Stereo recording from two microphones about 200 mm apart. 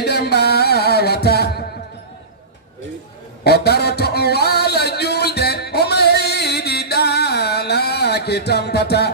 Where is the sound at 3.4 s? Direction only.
55° left (ahead or behind).